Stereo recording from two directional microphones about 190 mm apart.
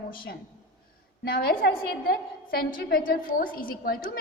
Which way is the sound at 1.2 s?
50° left (ahead or behind).